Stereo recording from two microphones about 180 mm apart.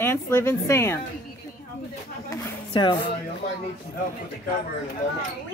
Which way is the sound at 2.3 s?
25° left (ahead or behind).